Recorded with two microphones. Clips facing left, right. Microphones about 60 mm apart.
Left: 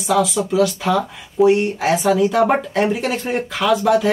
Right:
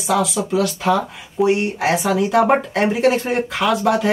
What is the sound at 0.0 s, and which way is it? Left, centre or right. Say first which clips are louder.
Speech: left 1 dB; centre.